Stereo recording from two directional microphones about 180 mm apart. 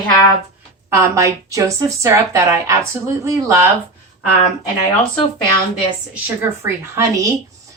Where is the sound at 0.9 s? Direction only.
15° right (ahead or behind).